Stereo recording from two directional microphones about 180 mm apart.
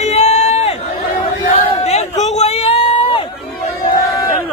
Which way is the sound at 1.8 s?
40° left (ahead or behind).